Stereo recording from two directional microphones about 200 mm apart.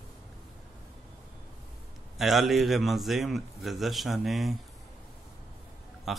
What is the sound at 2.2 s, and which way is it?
A man's voice, centre (ahead or behind).